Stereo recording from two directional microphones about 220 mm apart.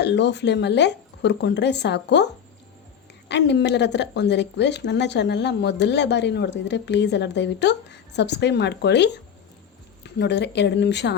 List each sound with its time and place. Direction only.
0.0 s speech: 50° left (ahead or behind)
3.2 s speech: 50° left (ahead or behind)